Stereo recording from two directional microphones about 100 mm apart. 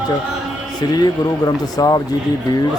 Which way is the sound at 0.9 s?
40° left (ahead or behind).